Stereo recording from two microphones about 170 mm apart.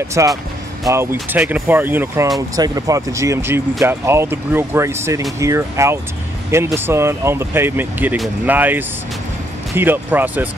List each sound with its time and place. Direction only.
0.2 s speech: 20° right (ahead or behind)